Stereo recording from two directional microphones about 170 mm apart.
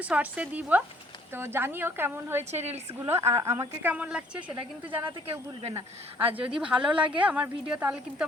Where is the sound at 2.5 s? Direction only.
40° right (ahead or behind).